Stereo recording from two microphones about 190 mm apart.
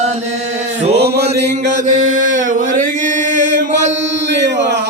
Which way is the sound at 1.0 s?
60° right (ahead or behind).